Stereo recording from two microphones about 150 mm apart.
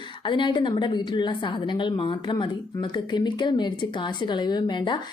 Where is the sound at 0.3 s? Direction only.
35° left (ahead or behind).